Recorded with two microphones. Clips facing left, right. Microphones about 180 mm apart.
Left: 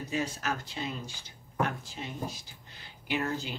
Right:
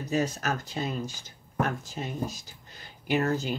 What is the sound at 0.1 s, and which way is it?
Speech, 40° right (ahead or behind).